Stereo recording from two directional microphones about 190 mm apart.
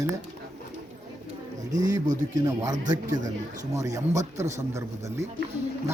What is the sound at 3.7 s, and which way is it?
A man's voice, 15° right (ahead or behind).